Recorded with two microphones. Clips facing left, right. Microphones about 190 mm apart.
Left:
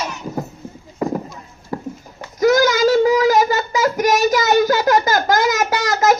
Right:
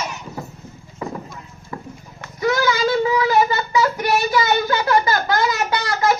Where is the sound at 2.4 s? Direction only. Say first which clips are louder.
Left 5 dB; 40° left (ahead or behind).